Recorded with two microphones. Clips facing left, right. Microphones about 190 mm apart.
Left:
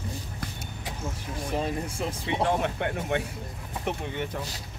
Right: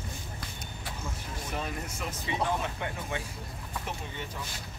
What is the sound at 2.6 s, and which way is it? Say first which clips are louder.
Speech: left 6 dB; 65° left (ahead or behind).